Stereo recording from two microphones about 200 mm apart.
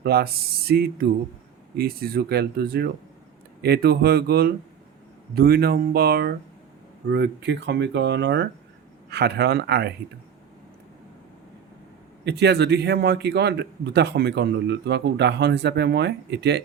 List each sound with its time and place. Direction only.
0.0 s a man's voice: 50° right (ahead or behind)
12.2 s a man's voice: 55° right (ahead or behind)